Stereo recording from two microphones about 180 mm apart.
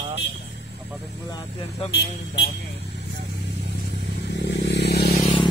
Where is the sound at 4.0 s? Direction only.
70° left (ahead or behind).